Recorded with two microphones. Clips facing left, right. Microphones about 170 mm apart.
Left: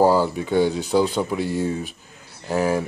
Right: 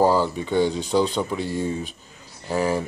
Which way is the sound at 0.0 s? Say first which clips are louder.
Left 2 dB; 10° left (ahead or behind).